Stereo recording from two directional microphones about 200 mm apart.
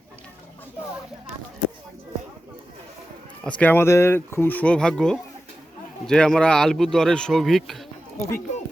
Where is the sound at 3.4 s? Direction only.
5° left (ahead or behind).